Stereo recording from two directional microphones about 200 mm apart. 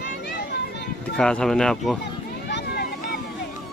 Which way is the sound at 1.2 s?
5° left (ahead or behind).